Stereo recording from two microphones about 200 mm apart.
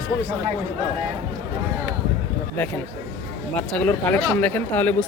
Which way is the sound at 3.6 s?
5° left (ahead or behind).